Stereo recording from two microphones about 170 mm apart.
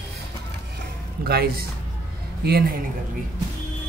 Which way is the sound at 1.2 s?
65° right (ahead or behind).